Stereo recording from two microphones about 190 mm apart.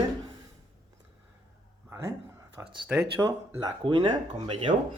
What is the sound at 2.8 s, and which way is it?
Speech, 15° right (ahead or behind).